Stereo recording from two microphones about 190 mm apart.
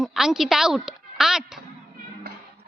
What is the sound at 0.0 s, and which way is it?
A woman's voice, 5° right (ahead or behind).